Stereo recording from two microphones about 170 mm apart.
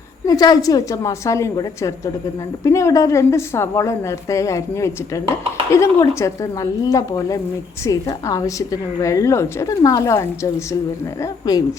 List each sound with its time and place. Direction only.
0.3 s a woman's voice: 20° left (ahead or behind)